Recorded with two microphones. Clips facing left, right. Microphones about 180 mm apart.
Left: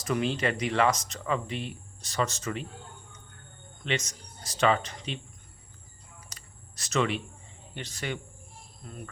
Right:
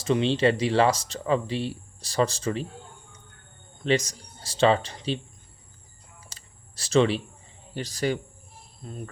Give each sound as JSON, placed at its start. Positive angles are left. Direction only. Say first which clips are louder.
{"t": 0.0, "sound": "speech", "louder": "right 6 dB", "side_deg": -25}
{"t": 3.8, "sound": "speech", "louder": "right 8 dB", "side_deg": -35}
{"t": 6.2, "sound": "a sound", "louder": "even", "side_deg": -30}
{"t": 7.7, "sound": "speech", "louder": "right 8 dB", "side_deg": -35}